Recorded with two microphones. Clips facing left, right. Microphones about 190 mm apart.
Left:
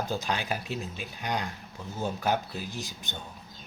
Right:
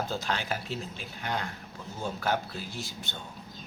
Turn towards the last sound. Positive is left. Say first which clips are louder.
# left 1 dB
turn(degrees=15)  # may be behind; listen again after turning